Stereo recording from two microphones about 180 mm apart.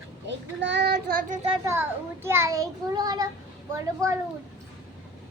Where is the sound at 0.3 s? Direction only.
80° right; by 1.4 s 55° right (ahead or behind).